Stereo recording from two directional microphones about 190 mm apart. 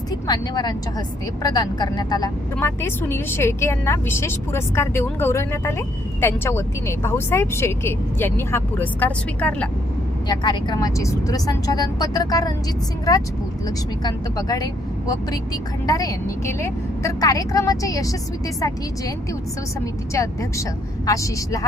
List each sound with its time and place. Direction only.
0.1 s a woman's voice: 20° left (ahead or behind)
10.2 s speech: 20° left (ahead or behind)
13.7 s a woman's voice: 20° left (ahead or behind)